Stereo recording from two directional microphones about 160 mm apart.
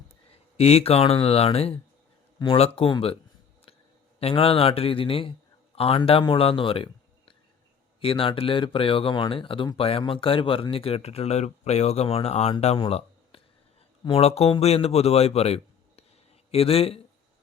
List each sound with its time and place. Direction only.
0.5 s speech: 40° left (ahead or behind)
4.2 s a man's voice: 40° left (ahead or behind)